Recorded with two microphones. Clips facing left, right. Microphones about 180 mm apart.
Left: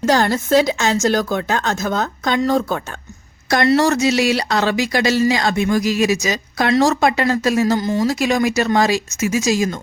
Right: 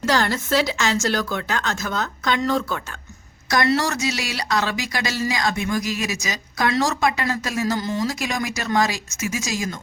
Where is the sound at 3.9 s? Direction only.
60° left (ahead or behind).